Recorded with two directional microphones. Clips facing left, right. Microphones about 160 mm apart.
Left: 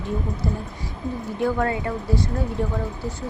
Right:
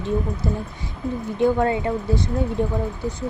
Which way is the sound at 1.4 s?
25° right (ahead or behind).